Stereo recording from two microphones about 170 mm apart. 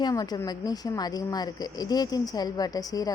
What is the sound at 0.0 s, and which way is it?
A woman's voice, 20° left (ahead or behind).